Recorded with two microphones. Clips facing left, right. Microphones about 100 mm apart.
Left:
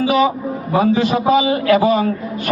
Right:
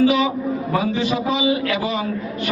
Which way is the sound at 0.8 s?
50° left (ahead or behind).